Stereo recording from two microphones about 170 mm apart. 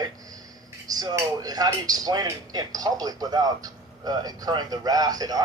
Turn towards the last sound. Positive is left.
turn(degrees=-20)  # may be behind; listen again after turning